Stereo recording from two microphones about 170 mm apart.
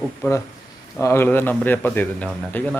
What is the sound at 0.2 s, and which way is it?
Speech, 15° left (ahead or behind).